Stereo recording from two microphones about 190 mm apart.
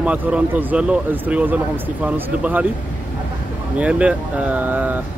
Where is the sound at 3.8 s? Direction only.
5° right (ahead or behind).